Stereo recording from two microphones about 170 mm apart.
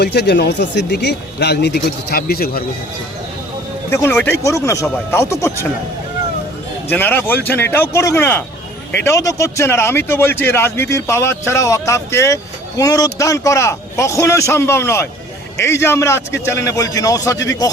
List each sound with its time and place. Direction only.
0.0 s speech: 75° left (ahead or behind)
3.8 s speech: 15° left (ahead or behind)
6.8 s speech: 10° left (ahead or behind)